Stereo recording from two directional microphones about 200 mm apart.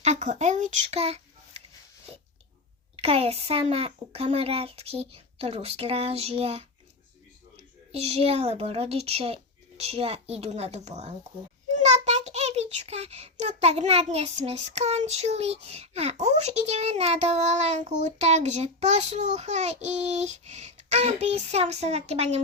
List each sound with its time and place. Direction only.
0.0 s speech: 35° right (ahead or behind)
2.9 s speech: 30° right (ahead or behind)
7.9 s child singing: 30° right (ahead or behind)